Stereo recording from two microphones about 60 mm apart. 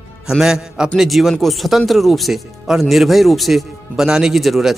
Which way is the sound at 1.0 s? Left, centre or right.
Centre.